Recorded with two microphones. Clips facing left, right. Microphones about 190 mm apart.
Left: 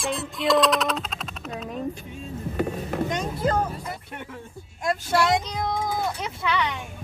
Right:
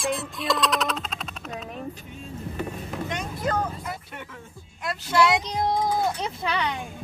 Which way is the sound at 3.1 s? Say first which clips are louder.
Left 1 dB; 30° left (ahead or behind).